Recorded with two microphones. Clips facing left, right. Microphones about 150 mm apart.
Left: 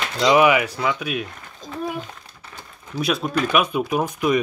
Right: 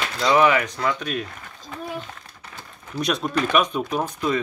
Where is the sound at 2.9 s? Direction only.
5° left (ahead or behind).